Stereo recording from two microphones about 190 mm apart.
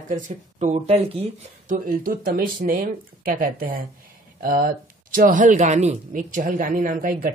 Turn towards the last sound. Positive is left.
turn(degrees=-45)  # may be behind; listen again after turning